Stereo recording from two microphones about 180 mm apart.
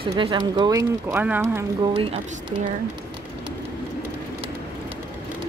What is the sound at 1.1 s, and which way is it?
Speech, 10° right (ahead or behind).